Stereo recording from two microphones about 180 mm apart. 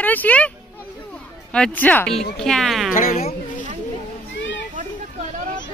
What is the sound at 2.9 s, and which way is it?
Speech, 50° left (ahead or behind).